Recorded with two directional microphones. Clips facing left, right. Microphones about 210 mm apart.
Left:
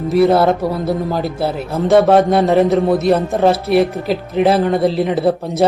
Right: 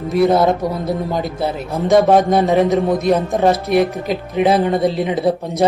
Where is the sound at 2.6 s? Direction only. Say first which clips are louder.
Left 2 dB; centre (ahead or behind).